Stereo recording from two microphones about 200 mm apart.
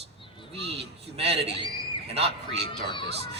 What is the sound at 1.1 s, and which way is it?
Speech, 30° right (ahead or behind).